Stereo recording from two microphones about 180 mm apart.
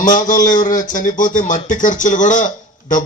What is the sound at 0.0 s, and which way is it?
A man's voice, 45° left (ahead or behind).